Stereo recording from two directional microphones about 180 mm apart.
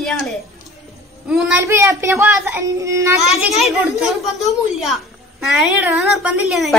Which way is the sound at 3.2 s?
Centre (ahead or behind).